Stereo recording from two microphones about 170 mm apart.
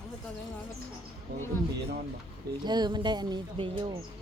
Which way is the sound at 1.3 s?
75° right (ahead or behind).